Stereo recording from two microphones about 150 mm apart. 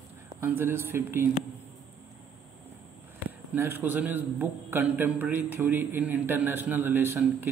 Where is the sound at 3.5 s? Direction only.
15° right (ahead or behind).